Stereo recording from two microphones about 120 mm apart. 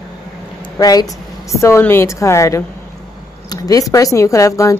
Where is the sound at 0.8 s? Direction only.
30° left (ahead or behind).